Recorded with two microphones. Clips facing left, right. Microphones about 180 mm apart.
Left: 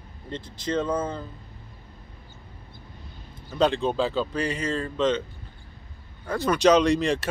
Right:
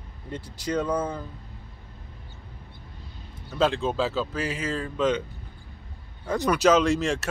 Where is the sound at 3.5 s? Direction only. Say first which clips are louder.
Left 1 dB; centre (ahead or behind).